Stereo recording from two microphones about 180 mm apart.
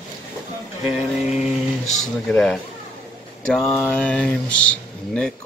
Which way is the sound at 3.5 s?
5° left (ahead or behind).